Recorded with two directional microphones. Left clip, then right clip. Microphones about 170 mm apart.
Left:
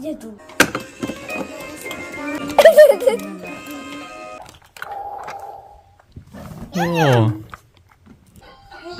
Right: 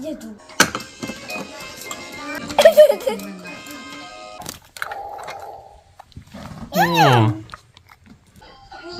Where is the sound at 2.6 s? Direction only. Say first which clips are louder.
Left 2 dB; 35° left (ahead or behind).